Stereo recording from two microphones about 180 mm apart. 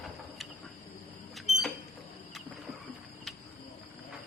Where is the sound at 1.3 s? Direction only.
Centre (ahead or behind).